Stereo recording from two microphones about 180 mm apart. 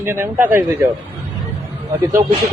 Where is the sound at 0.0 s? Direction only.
10° right (ahead or behind).